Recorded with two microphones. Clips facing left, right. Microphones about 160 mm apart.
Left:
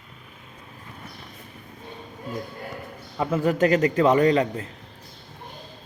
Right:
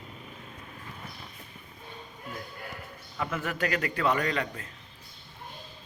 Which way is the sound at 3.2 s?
30° left (ahead or behind).